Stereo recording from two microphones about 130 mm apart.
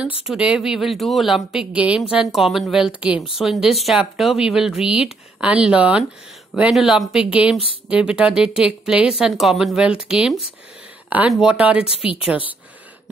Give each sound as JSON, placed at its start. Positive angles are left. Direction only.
{"t": 0.0, "sound": "a woman's voice", "side_deg": -10}